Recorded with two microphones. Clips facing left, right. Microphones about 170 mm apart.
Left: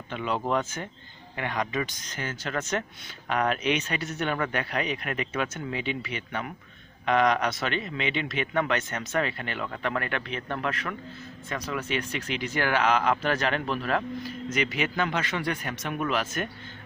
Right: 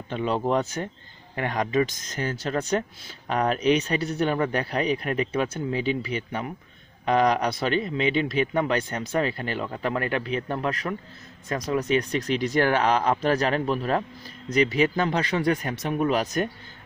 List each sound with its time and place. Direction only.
0.1 s speech: 30° right (ahead or behind)